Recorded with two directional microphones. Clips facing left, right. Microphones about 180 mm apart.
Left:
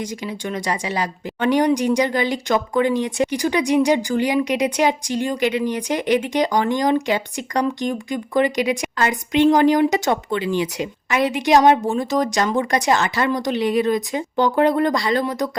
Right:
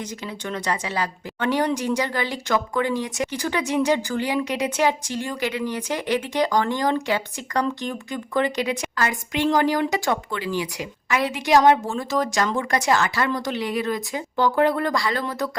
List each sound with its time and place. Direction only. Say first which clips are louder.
0.0 s a woman's voice: left 4 dB; 10° left (ahead or behind)